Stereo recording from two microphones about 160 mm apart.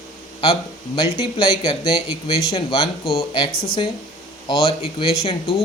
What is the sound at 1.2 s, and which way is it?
Speech, 25° left (ahead or behind).